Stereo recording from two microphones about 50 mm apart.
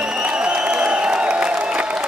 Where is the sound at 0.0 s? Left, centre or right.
Centre.